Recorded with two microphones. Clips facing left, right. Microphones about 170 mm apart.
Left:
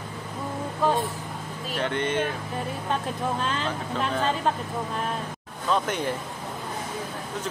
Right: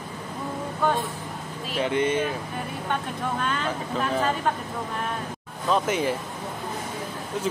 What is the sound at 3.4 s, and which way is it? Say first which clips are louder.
Speech: right 1 dB; 30° left (ahead or behind).